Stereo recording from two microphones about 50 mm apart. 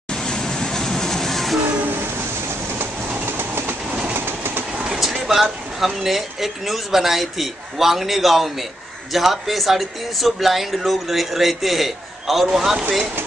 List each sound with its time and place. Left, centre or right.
0.1 s vehicle: centre
3.3 s train: right
4.8 s speech: centre